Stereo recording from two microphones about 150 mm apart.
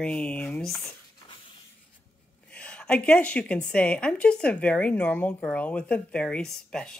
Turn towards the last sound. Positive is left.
turn(degrees=5)  # may be behind; listen again after turning